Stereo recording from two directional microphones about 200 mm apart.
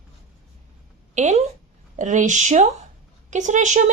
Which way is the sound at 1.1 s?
35° right (ahead or behind).